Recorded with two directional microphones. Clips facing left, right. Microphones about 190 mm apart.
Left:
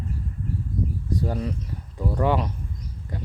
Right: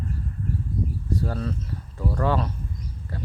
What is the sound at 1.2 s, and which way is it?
Speech, 15° left (ahead or behind).